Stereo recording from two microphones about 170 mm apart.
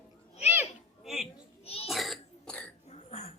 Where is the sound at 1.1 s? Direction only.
Centre (ahead or behind).